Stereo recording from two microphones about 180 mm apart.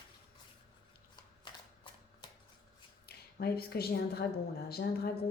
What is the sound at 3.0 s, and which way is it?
A woman's voice, 60° left (ahead or behind).